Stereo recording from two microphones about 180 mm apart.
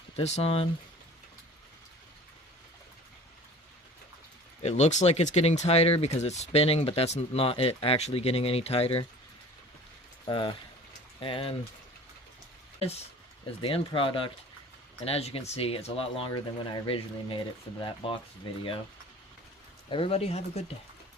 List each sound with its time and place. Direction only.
0.2 s speech: 35° left (ahead or behind)
4.6 s speech: 40° left (ahead or behind)
10.2 s speech: 25° left (ahead or behind)
13.6 s speech: 30° left (ahead or behind)
19.9 s speech: 30° left (ahead or behind)